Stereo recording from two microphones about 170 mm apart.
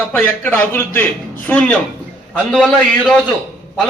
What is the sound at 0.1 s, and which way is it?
A man's voice, 10° left (ahead or behind).